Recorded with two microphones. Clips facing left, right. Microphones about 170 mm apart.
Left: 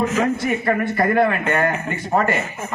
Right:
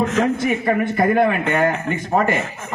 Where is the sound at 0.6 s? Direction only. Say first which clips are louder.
Right 1 dB; 15° right (ahead or behind).